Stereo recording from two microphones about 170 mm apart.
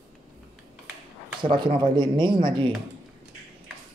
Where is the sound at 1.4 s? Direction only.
30° right (ahead or behind).